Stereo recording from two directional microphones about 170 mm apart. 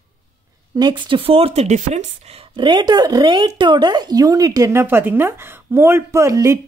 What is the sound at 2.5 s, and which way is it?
A woman's voice, 25° right (ahead or behind).